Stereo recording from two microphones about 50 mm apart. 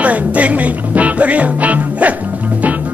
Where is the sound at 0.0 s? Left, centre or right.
Right.